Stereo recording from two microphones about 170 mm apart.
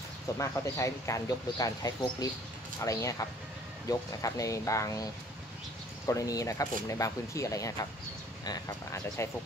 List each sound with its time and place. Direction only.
0.4 s speech: 15° left (ahead or behind)
6.0 s speech: 20° left (ahead or behind)